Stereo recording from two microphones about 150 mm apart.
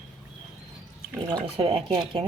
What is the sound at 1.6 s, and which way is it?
Dishes, 40° right (ahead or behind).